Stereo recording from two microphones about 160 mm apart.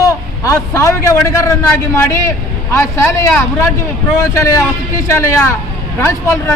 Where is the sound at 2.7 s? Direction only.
15° left (ahead or behind).